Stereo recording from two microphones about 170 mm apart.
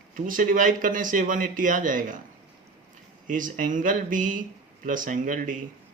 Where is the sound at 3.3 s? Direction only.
50° right (ahead or behind).